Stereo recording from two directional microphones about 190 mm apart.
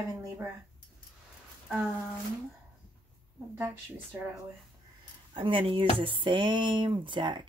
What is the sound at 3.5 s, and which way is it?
Speech, 10° right (ahead or behind).